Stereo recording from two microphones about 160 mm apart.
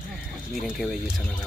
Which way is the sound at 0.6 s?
Centre (ahead or behind).